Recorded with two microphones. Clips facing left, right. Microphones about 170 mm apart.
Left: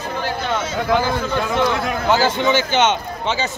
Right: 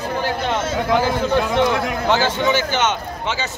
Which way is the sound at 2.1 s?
10° left (ahead or behind).